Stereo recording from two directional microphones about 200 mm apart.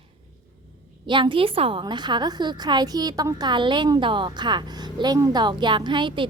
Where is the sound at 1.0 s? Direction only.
25° right (ahead or behind).